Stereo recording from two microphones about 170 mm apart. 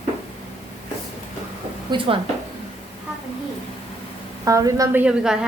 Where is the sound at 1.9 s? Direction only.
25° right (ahead or behind).